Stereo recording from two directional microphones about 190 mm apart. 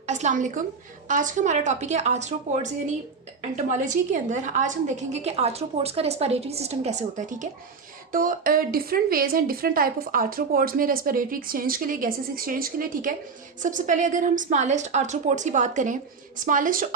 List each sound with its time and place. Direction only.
0.0 s a woman's voice: 40° right (ahead or behind)
3.7 s a woman's voice: 40° right (ahead or behind)